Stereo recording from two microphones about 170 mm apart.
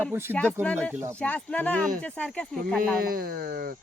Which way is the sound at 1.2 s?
10° left (ahead or behind).